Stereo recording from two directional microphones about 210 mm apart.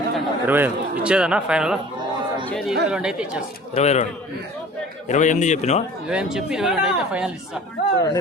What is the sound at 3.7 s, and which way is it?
Speech, 30° left (ahead or behind).